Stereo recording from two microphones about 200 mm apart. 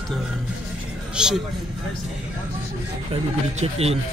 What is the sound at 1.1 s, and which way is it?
Speech, 5° right (ahead or behind).